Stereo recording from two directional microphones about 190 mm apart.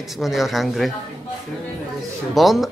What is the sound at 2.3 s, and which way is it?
Speech, centre (ahead or behind).